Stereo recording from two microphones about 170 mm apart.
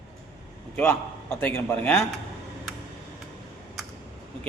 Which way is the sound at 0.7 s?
10° left (ahead or behind).